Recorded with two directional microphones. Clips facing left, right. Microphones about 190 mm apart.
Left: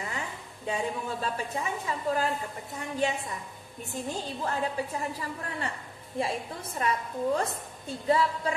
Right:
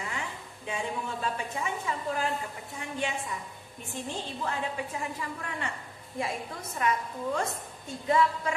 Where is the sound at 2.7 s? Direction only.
40° left (ahead or behind).